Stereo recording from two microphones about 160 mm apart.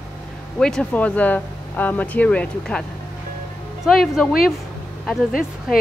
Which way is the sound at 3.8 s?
Centre (ahead or behind).